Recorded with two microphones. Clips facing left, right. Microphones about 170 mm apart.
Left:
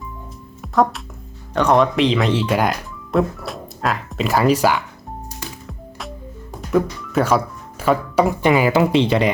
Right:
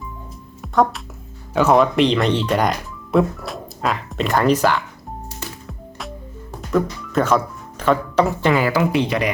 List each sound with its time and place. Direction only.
0.6 s music: centre (ahead or behind)
1.5 s speech: 5° right (ahead or behind)
6.7 s speech: 10° left (ahead or behind); by 9.3 s 25° left (ahead or behind)